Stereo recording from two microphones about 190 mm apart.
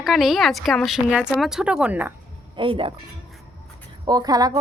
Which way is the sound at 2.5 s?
25° right (ahead or behind).